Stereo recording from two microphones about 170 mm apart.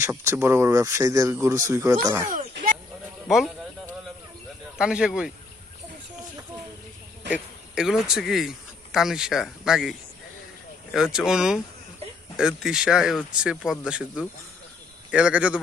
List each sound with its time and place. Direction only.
0.0 s speech: 15° right (ahead or behind)
3.2 s speech: centre (ahead or behind)
4.8 s speech: 5° right (ahead or behind)
7.3 s a man's voice: 5° right (ahead or behind)
10.9 s speech: 5° right (ahead or behind)